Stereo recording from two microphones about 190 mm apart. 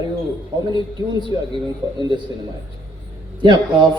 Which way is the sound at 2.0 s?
25° right (ahead or behind).